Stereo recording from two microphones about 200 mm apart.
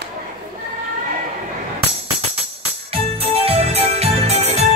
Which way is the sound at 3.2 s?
30° right (ahead or behind).